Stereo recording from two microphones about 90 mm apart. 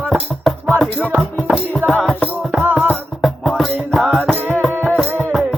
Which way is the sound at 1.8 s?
25° right (ahead or behind).